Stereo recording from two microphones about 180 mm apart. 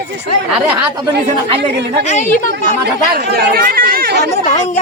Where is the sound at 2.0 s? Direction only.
40° left (ahead or behind).